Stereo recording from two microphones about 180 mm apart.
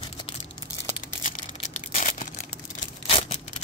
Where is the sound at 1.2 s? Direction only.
45° left (ahead or behind).